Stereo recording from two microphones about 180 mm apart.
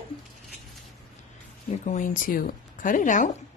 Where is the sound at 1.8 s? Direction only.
45° left (ahead or behind).